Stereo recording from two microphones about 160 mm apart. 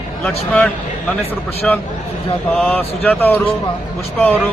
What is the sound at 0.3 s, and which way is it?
A man's voice, 5° left (ahead or behind).